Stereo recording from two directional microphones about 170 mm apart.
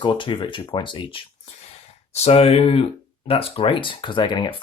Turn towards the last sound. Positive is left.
turn(degrees=30)  # may be behind; listen again after turning